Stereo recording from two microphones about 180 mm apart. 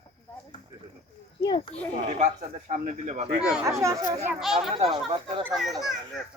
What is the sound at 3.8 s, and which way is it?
Speech, 20° right (ahead or behind).